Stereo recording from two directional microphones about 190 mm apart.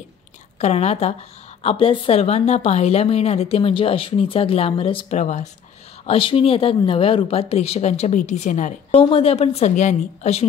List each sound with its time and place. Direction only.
0.6 s a woman's voice: 35° left (ahead or behind)
8.9 s a woman's voice: 30° left (ahead or behind)